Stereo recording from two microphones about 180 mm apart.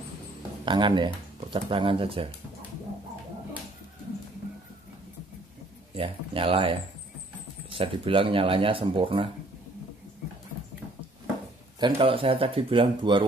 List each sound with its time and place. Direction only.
0.7 s speech: 25° right (ahead or behind)
5.9 s speech: 30° right (ahead or behind)
11.8 s speech: 30° right (ahead or behind)